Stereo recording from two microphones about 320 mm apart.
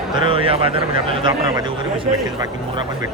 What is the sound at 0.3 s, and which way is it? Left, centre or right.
Speech, centre.